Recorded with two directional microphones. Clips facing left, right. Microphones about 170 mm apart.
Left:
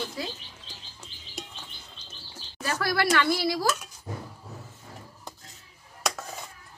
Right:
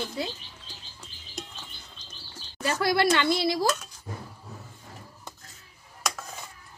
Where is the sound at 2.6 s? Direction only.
25° right (ahead or behind).